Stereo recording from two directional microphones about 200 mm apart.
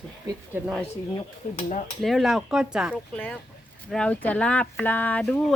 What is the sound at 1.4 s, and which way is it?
Speech, 35° left (ahead or behind).